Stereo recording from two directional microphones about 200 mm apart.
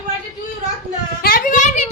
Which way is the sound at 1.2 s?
45° left (ahead or behind).